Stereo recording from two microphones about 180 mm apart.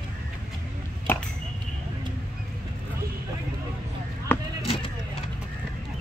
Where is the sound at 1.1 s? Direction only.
10° left (ahead or behind).